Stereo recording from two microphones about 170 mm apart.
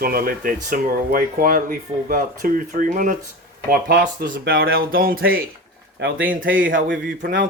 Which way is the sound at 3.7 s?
65° right (ahead or behind).